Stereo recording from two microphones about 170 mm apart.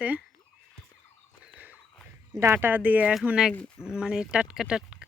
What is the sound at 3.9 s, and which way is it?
Speech, 5° right (ahead or behind).